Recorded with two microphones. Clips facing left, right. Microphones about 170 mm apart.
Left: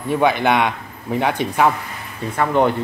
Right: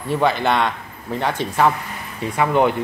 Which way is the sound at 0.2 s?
15° left (ahead or behind).